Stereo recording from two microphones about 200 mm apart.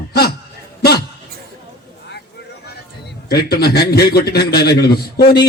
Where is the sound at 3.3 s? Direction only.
50° left (ahead or behind).